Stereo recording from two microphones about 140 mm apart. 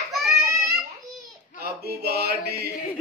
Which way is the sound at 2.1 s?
90° right.